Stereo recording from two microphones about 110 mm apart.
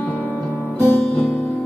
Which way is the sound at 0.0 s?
15° left (ahead or behind).